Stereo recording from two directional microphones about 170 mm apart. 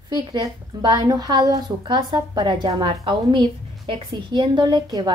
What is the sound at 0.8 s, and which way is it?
A woman's voice, 25° right (ahead or behind).